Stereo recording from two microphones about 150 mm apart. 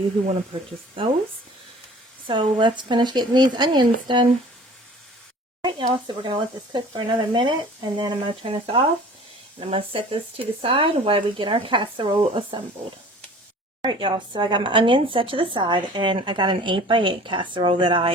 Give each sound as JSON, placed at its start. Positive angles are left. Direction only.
{"t": 0.3, "sound": "speech", "side_deg": -35}
{"t": 2.2, "sound": "speech", "side_deg": -35}
{"t": 5.6, "sound": "speech", "side_deg": -30}
{"t": 13.8, "sound": "speech", "side_deg": -30}